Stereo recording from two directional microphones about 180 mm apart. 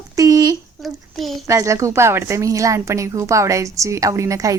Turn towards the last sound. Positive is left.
turn(degrees=-20)  # may be behind; listen again after turning